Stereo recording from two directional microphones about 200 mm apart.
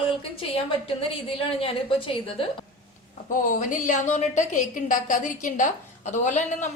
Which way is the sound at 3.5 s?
40° left (ahead or behind).